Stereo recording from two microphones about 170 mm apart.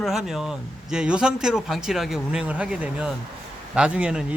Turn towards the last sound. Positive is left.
turn(degrees=-5)  # may be behind; listen again after turning